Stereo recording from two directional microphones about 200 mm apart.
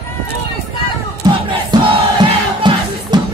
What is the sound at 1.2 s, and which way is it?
Crowd, 20° right (ahead or behind).